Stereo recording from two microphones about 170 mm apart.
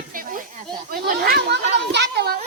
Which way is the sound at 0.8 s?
65° right (ahead or behind).